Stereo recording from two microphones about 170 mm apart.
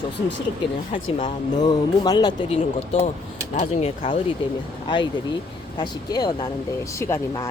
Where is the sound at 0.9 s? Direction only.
25° left (ahead or behind).